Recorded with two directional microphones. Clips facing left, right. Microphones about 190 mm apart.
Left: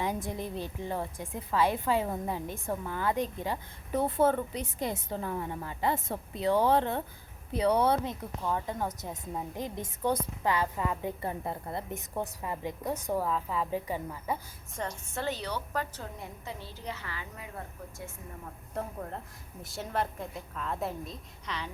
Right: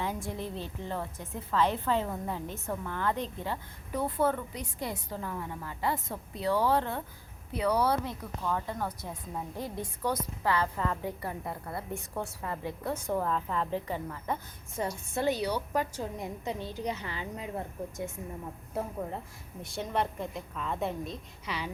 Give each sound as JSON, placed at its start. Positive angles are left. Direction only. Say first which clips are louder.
{"t": 0.0, "sound": "a woman's voice", "louder": "left 1 dB", "side_deg": 15}
{"t": 3.9, "sound": "a woman's voice", "louder": "left 3 dB", "side_deg": 25}
{"t": 14.8, "sound": "a woman's voice", "louder": "right 4 dB", "side_deg": -10}
{"t": 18.7, "sound": "a woman's voice", "louder": "right 2 dB", "side_deg": -5}